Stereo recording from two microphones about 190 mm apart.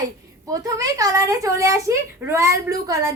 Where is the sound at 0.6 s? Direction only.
20° right (ahead or behind).